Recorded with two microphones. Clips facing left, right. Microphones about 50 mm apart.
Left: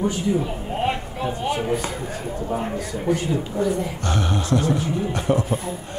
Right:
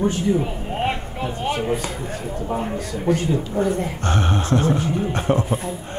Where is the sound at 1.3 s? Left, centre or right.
Right.